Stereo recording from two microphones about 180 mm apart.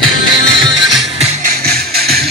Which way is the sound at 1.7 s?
60° right (ahead or behind).